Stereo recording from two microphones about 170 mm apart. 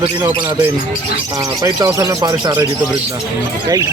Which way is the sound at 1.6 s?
20° right (ahead or behind).